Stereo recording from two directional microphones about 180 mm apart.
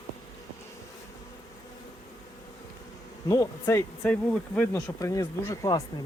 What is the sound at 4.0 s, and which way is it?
Speech, 5° left (ahead or behind).